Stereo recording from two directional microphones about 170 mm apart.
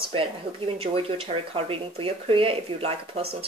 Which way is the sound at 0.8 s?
35° right (ahead or behind).